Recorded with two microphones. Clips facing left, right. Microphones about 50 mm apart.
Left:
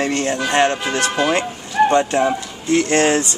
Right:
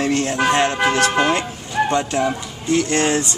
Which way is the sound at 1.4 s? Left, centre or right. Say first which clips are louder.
Left 4 dB; centre.